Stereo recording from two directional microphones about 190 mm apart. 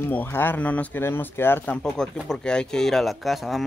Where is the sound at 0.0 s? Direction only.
10° left (ahead or behind).